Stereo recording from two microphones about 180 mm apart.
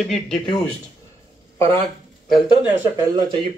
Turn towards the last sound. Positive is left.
turn(degrees=-25)  # may be behind; listen again after turning